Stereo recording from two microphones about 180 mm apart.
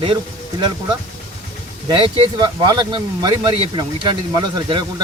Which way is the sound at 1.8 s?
25° right (ahead or behind).